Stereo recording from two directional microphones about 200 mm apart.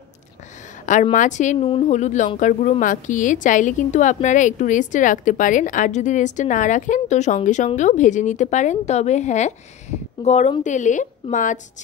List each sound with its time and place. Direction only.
1.1 s speech: 40° left (ahead or behind)